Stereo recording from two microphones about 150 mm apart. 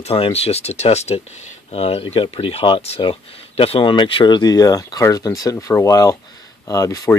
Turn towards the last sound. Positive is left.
turn(degrees=20)  # may be behind; listen again after turning